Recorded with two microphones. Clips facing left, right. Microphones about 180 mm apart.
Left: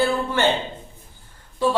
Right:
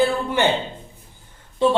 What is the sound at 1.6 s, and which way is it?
Speech, 25° right (ahead or behind).